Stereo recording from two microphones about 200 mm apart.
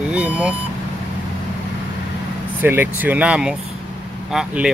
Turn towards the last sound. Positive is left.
turn(degrees=-5)  # may be behind; listen again after turning